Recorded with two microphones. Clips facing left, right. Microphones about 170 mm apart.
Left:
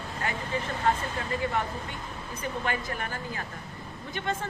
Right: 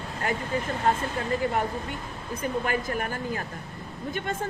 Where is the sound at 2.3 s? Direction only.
50° right (ahead or behind).